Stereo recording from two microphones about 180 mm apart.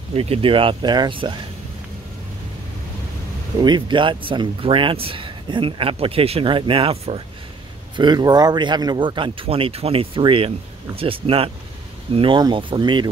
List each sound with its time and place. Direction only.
0.1 s speech: 35° right (ahead or behind)
3.6 s speech: 25° right (ahead or behind)